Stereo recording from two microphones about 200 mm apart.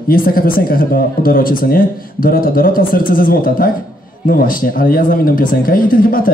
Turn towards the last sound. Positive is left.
turn(degrees=45)  # may be behind; listen again after turning